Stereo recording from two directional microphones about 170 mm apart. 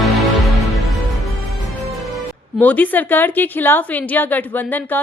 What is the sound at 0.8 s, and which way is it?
Music, centre (ahead or behind).